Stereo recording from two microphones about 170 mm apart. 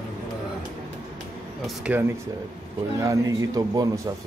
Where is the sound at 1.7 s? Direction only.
5° right (ahead or behind).